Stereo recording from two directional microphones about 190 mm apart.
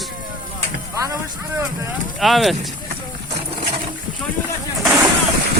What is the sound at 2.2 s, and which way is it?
Speech, centre (ahead or behind).